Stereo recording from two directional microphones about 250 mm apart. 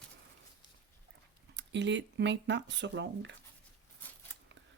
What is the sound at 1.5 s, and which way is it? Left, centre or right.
Speech, right.